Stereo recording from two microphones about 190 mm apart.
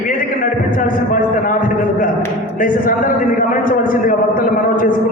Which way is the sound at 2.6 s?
45° left (ahead or behind).